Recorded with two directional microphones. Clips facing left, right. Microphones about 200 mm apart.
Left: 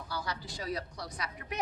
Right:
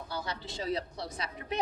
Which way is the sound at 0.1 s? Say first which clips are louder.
Even; 25° right (ahead or behind).